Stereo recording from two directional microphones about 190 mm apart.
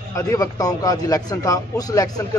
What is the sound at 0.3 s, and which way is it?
A man's voice, 20° left (ahead or behind).